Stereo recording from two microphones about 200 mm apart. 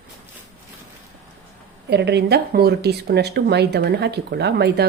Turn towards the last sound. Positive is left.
turn(degrees=-55)  # may be behind; listen again after turning